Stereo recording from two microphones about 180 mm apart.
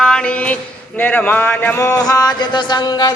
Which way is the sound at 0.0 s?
5° left (ahead or behind).